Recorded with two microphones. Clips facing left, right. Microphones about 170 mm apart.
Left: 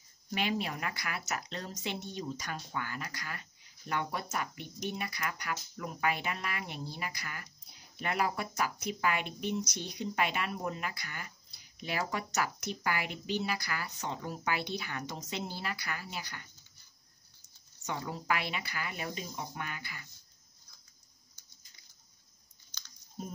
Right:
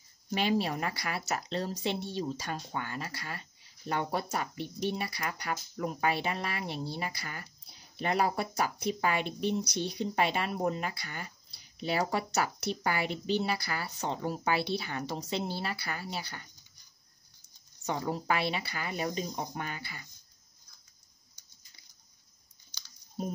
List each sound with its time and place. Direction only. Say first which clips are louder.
0.3 s speech: right 5 dB; 30° right (ahead or behind)
17.8 s speech: right 4 dB; 35° right (ahead or behind)
22.7 s a sound: left 1 dB; 10° right (ahead or behind)